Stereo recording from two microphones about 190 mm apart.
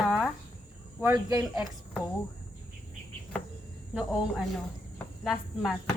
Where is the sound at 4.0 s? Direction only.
5° right (ahead or behind).